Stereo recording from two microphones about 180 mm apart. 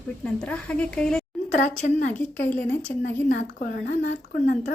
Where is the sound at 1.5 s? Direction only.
45° left (ahead or behind).